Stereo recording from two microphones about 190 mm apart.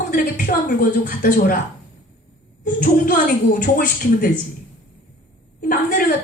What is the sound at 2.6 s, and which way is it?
A woman's voice, 45° left (ahead or behind).